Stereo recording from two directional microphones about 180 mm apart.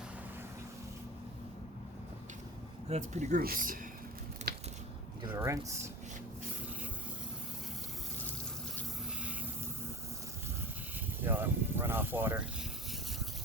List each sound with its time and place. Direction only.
2.9 s speech: 40° right (ahead or behind)
3.4 s speech: 50° right (ahead or behind)
4.5 s crushing: 60° right (ahead or behind)
5.3 s speech: 15° right (ahead or behind)
11.2 s speech: 10° right (ahead or behind)